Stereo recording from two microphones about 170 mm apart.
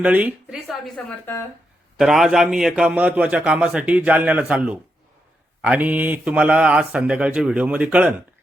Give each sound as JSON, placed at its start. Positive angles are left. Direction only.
{"t": 0.0, "sound": "a woman's voice", "side_deg": -10}
{"t": 1.2, "sound": "speech", "side_deg": 15}
{"t": 2.0, "sound": "a man's voice", "side_deg": 0}